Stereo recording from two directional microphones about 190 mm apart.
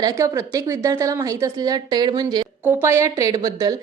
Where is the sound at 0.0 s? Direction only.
15° right (ahead or behind).